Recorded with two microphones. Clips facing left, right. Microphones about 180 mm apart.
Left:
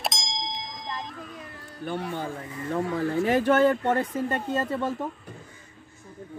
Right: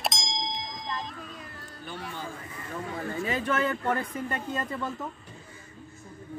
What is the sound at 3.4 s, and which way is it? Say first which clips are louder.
Speech: left 6 dB; 35° left (ahead or behind).